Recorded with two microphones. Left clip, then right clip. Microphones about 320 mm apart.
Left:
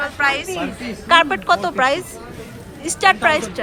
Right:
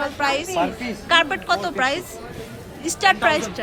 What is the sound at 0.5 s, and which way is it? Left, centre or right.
Speech, right.